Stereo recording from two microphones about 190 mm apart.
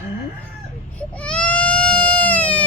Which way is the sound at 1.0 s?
5° left (ahead or behind).